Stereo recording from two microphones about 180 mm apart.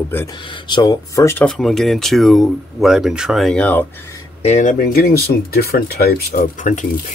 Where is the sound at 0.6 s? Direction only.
25° left (ahead or behind).